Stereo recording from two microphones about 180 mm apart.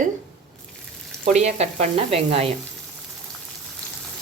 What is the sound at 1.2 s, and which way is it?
Speech, 40° right (ahead or behind).